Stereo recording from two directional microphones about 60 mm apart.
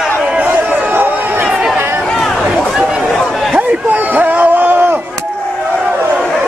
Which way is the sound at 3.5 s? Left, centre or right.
Right.